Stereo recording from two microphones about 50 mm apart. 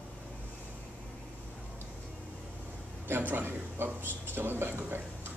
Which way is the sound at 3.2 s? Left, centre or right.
Right.